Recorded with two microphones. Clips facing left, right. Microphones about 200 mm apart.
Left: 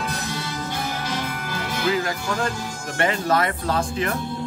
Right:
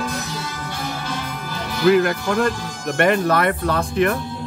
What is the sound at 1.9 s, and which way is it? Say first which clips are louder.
Speech: right 9 dB; 60° right (ahead or behind).